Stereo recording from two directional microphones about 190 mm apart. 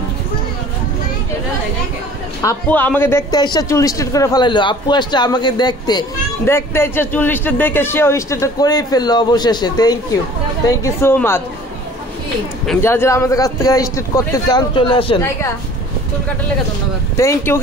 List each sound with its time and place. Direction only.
2.4 s a man's voice: 10° left (ahead or behind)
12.8 s a man's voice: 15° left (ahead or behind)
17.2 s a man's voice: 15° left (ahead or behind)